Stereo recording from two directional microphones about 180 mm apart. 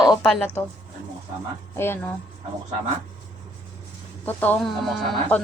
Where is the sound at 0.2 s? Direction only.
5° left (ahead or behind).